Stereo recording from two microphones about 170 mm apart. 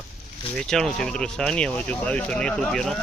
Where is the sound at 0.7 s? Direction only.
5° left (ahead or behind).